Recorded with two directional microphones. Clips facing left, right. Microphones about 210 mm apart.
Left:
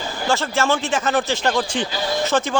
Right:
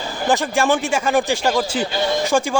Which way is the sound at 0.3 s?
15° right (ahead or behind).